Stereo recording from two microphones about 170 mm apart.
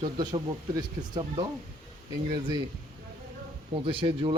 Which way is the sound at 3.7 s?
30° right (ahead or behind).